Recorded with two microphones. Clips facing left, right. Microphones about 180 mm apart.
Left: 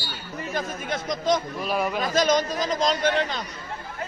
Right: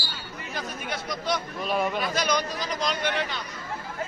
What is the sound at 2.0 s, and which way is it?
A man's voice, 45° left (ahead or behind).